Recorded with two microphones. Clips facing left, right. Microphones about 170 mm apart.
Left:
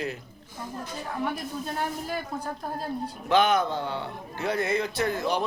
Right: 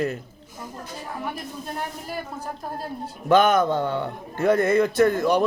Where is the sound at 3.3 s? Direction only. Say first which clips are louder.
Right 5 dB; 45° right (ahead or behind).